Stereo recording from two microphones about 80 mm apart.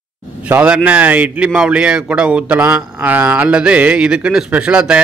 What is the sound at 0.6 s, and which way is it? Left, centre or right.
A man's voice, centre.